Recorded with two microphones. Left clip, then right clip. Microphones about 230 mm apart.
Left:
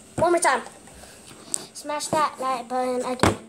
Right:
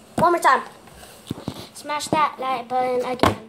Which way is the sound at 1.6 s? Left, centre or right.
Right.